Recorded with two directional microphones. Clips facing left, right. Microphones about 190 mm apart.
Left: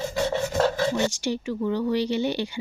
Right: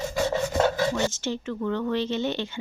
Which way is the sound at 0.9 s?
15° left (ahead or behind).